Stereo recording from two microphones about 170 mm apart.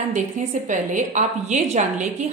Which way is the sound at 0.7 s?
45° right (ahead or behind).